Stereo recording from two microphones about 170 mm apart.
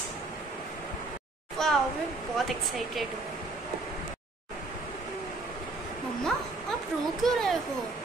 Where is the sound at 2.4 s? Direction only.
Centre (ahead or behind).